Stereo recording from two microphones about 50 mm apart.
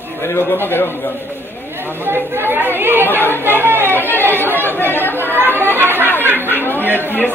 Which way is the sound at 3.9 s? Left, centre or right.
Left.